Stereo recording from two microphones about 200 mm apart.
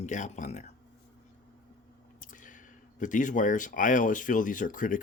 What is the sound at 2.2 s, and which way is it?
Speech, 40° left (ahead or behind).